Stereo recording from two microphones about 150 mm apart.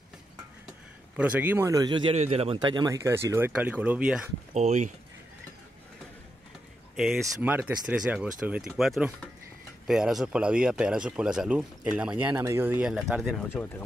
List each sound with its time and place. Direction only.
1.1 s speech: 10° right (ahead or behind); by 2.1 s 30° right (ahead or behind)
2.1 s speech: 45° right (ahead or behind); by 4.3 s 5° right (ahead or behind)
4.6 s speech: 50° right (ahead or behind)
7.0 s speech: centre (ahead or behind)